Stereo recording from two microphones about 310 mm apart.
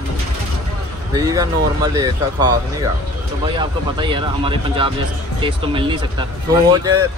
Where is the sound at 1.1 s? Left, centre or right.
Centre.